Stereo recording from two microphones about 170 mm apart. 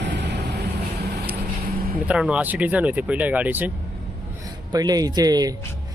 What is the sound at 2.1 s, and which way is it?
Speech, 5° right (ahead or behind).